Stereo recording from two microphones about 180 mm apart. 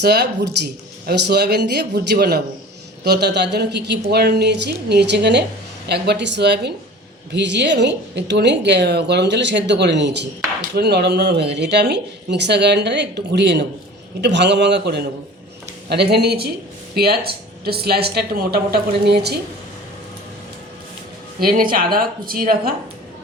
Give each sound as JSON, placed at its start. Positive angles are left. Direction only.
{"t": 0.0, "sound": "a woman's voice", "side_deg": -65}
{"t": 21.4, "sound": "speech", "side_deg": -50}